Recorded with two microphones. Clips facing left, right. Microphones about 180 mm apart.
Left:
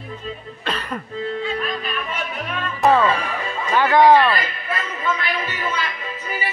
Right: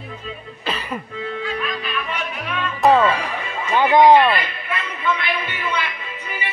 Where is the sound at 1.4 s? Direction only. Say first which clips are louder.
Left 1 dB; 30° left (ahead or behind).